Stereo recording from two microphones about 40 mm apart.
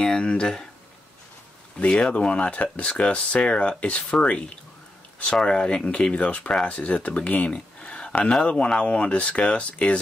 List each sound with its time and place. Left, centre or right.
0.0 s speech: left
1.8 s speech: left